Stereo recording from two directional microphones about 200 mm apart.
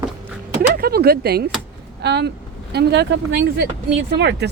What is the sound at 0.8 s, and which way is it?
Speech, 50° right (ahead or behind).